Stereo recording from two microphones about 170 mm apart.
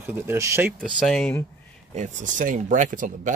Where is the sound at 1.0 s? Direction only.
5° left (ahead or behind).